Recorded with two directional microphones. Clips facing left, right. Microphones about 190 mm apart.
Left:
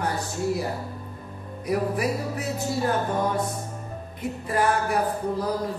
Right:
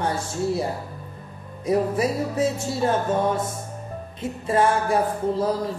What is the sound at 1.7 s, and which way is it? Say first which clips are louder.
Speech: right 3 dB; 25° right (ahead or behind).